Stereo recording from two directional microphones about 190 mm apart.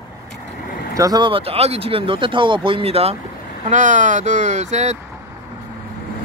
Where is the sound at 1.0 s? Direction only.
20° right (ahead or behind); by 5.0 s 35° right (ahead or behind).